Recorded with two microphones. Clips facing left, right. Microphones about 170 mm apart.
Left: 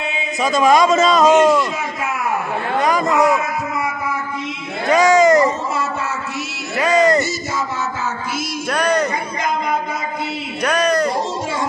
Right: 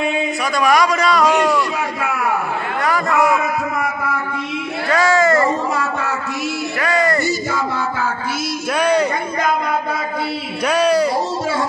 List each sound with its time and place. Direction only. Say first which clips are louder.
0.4 s a man's voice: left 4 dB; 20° left (ahead or behind)
2.8 s a man's voice: left 1 dB; 20° left (ahead or behind)
4.8 s a sound: left 4 dB; 20° left (ahead or behind)
6.8 s music: left 4 dB; 20° left (ahead or behind)
8.6 s a sound: right 2 dB; 5° right (ahead or behind)
10.6 s music: right 2 dB; 5° right (ahead or behind)